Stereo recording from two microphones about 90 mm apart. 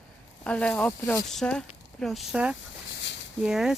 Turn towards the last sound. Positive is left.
turn(degrees=-5)  # may be behind; listen again after turning